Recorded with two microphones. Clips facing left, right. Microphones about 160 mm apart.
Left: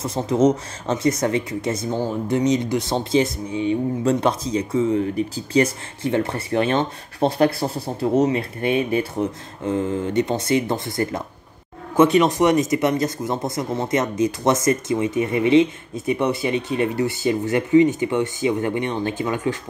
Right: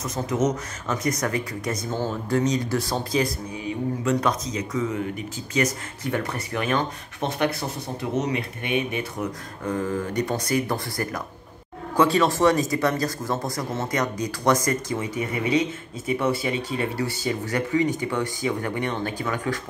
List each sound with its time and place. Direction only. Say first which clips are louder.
0.0 s speech: left 6 dB; 30° left (ahead or behind)